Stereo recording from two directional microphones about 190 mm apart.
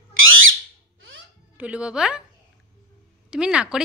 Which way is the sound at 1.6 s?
5° right (ahead or behind).